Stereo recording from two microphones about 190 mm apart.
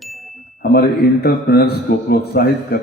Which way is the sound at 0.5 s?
55° left (ahead or behind).